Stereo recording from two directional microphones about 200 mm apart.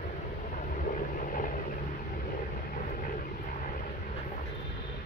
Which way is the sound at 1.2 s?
45° left (ahead or behind).